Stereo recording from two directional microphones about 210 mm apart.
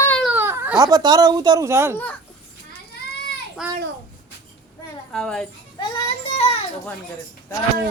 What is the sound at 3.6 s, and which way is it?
Speech, centre (ahead or behind).